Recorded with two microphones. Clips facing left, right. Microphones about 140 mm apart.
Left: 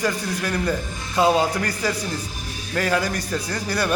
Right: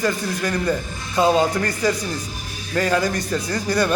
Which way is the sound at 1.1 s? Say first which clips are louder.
Right 1 dB; 5° left (ahead or behind).